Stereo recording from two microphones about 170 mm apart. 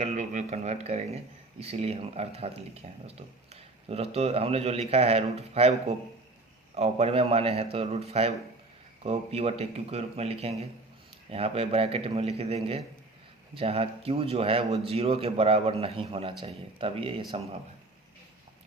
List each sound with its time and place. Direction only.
0.0 s a man's voice: 45° right (ahead or behind)
6.7 s a man's voice: 35° right (ahead or behind)